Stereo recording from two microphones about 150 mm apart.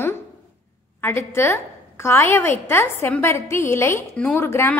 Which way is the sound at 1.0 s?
15° left (ahead or behind).